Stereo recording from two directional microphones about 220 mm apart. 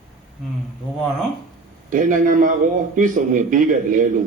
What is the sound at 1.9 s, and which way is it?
A man's voice, 35° right (ahead or behind).